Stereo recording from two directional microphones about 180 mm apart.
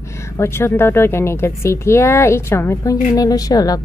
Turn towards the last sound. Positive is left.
turn(degrees=20)  # may be behind; listen again after turning